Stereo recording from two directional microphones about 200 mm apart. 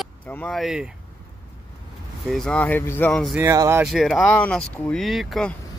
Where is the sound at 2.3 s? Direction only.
5° left (ahead or behind).